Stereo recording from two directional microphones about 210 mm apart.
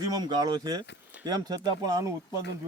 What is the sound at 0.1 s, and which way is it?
A man's voice, 20° right (ahead or behind).